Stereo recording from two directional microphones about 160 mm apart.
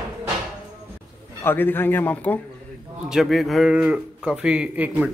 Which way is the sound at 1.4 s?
15° left (ahead or behind).